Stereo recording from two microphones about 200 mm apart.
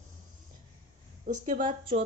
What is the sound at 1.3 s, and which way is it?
Speech, 40° right (ahead or behind).